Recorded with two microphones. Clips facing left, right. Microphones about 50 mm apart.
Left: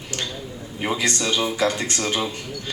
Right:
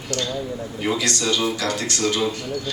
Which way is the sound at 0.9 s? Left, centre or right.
Left.